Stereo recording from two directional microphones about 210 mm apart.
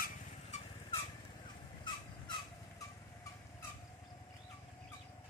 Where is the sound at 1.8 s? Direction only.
20° left (ahead or behind).